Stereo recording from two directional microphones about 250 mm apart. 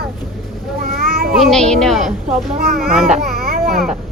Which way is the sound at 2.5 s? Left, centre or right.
Right.